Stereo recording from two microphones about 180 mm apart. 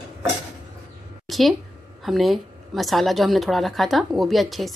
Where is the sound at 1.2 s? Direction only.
Centre (ahead or behind).